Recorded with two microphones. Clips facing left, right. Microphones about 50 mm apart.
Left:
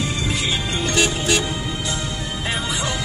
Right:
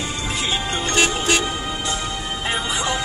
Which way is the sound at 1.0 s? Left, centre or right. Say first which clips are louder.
Right 1 dB; right.